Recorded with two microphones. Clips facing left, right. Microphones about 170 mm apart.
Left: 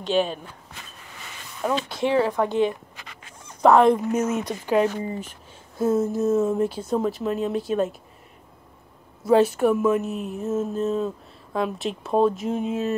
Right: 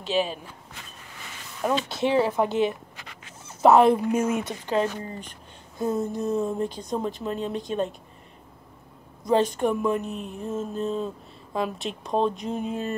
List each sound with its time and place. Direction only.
0.0 s speech: 5° right (ahead or behind)
1.6 s speech: 20° right (ahead or behind)
3.7 s speech: 5° right (ahead or behind)
4.6 s speech: 10° left (ahead or behind)
9.2 s speech: 5° left (ahead or behind)